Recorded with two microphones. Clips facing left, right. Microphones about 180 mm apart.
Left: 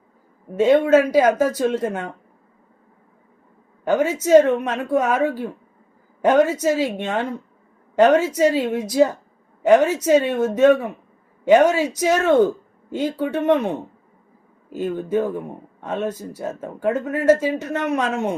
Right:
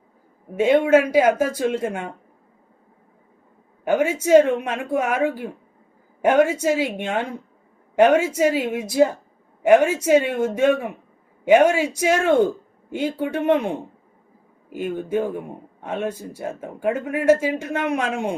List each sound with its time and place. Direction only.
0.5 s speech: 10° right (ahead or behind)
3.8 s speech: 10° right (ahead or behind)